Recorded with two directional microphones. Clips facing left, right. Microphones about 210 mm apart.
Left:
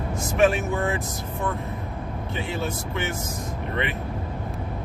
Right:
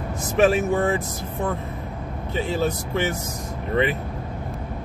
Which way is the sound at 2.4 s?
35° right (ahead or behind).